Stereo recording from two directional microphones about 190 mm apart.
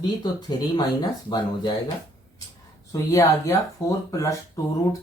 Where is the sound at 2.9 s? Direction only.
15° left (ahead or behind).